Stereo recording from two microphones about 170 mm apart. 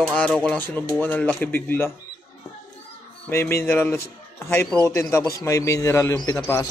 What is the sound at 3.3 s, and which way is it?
Speech, 15° left (ahead or behind).